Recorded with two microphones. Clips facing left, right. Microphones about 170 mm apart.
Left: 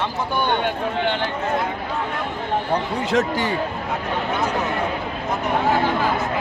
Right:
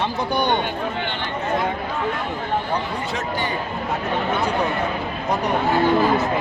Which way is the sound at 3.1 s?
90° left.